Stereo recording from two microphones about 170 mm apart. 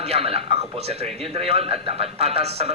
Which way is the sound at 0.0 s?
35° right (ahead or behind).